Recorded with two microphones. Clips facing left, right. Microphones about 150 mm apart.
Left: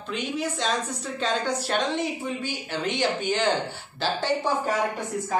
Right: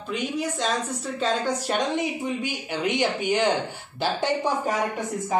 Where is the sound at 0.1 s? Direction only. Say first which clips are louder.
Right 1 dB; 10° right (ahead or behind).